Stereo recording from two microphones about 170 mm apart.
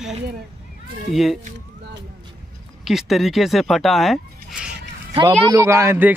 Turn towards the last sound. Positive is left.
turn(degrees=-15)  # may be behind; listen again after turning